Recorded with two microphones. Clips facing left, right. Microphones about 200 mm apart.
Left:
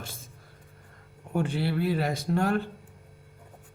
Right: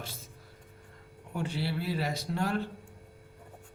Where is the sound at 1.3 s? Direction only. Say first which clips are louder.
Left 6 dB; 55° left (ahead or behind).